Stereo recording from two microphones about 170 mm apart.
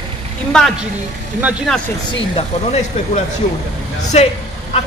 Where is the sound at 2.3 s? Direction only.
40° left (ahead or behind).